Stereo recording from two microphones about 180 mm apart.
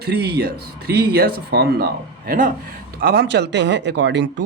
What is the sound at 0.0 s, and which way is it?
A man's voice, 65° right (ahead or behind).